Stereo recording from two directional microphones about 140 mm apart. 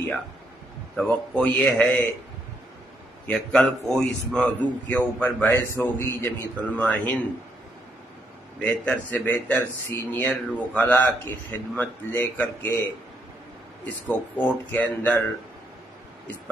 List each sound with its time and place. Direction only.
0.9 s a man's voice: 10° left (ahead or behind)
3.3 s a man's voice: 5° left (ahead or behind)
8.5 s a man's voice: 10° left (ahead or behind)
13.8 s a man's voice: 10° left (ahead or behind)